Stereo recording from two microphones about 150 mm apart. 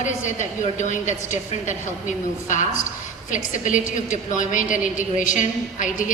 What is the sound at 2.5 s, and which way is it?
A woman's voice, 55° left (ahead or behind).